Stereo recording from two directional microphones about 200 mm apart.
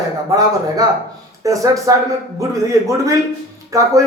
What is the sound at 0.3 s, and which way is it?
Speech, 20° right (ahead or behind).